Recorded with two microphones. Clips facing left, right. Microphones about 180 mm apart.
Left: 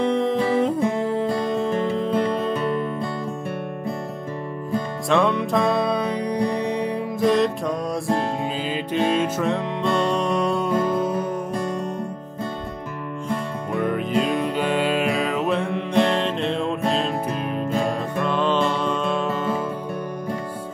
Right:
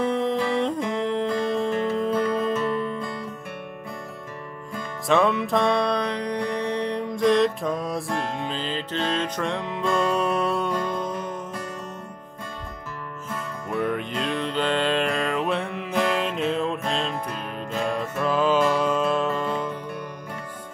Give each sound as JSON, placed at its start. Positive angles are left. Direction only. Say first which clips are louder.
{"t": 0.0, "sound": "music", "louder": "left 3 dB", "side_deg": 0}
{"t": 1.7, "sound": "music", "louder": "left 1 dB", "side_deg": 30}
{"t": 5.0, "sound": "music", "louder": "even", "side_deg": 0}
{"t": 8.5, "sound": "music", "louder": "left 5 dB", "side_deg": 10}
{"t": 13.7, "sound": "music", "louder": "left 4 dB", "side_deg": 0}
{"t": 17.8, "sound": "music", "louder": "left 1 dB", "side_deg": -5}